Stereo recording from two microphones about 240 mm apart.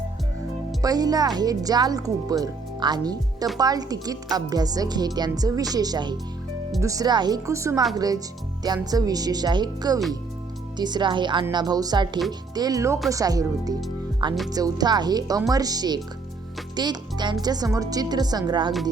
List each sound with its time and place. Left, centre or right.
0.8 s speech: centre